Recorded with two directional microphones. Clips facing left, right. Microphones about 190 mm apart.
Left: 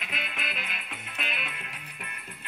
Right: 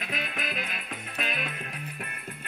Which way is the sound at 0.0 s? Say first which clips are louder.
Right 4 dB; 40° right (ahead or behind).